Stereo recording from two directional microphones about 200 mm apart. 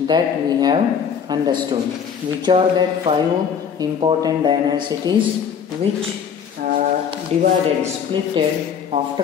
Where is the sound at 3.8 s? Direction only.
20° right (ahead or behind).